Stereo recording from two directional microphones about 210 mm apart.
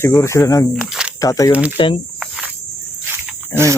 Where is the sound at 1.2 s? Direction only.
15° left (ahead or behind).